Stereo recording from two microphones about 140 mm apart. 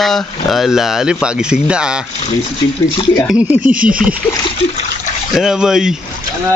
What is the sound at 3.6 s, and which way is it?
Speech, 75° right (ahead or behind).